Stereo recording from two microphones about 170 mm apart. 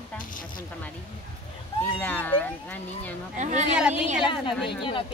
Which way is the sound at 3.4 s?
45° right (ahead or behind).